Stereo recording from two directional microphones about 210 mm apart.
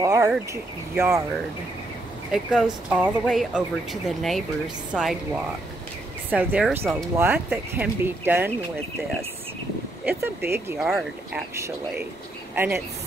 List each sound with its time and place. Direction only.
0.0 s speech: 15° right (ahead or behind)
2.3 s a woman's voice: 5° right (ahead or behind)
10.0 s speech: 10° right (ahead or behind)
11.5 s speech: 15° right (ahead or behind)